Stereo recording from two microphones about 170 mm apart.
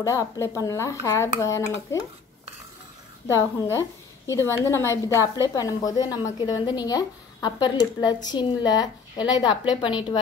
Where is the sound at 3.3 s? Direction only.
15° left (ahead or behind).